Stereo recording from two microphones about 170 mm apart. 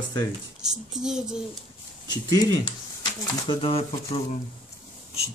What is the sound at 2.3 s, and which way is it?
Speech, 20° left (ahead or behind).